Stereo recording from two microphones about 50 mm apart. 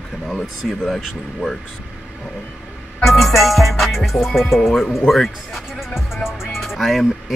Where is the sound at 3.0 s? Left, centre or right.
Centre.